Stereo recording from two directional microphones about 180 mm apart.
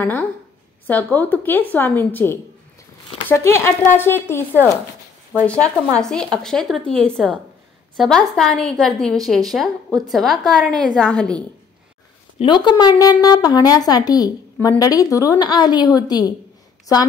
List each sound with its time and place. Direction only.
0.0 s a woman's voice: 10° left (ahead or behind)
12.4 s speech: 25° left (ahead or behind)